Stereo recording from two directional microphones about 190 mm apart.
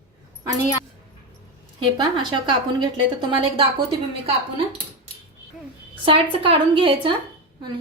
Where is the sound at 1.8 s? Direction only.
25° right (ahead or behind).